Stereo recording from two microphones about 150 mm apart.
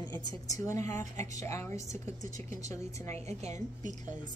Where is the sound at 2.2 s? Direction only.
55° right (ahead or behind).